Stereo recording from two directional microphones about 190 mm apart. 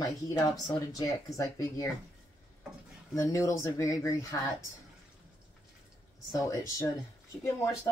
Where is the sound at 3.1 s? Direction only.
15° left (ahead or behind).